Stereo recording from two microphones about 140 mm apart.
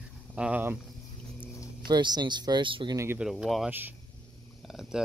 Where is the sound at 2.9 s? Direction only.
15° right (ahead or behind).